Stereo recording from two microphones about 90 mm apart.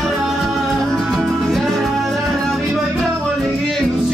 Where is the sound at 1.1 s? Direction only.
Centre (ahead or behind).